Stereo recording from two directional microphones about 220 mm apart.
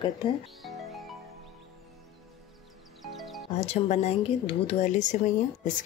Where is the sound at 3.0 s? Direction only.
Centre (ahead or behind).